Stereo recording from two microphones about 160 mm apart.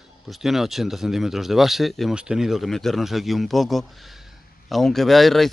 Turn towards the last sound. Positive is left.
turn(degrees=0)  # may be behind; listen again after turning